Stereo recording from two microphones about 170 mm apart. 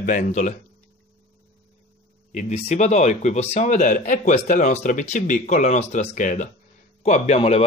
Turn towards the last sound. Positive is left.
turn(degrees=40)  # may be behind; listen again after turning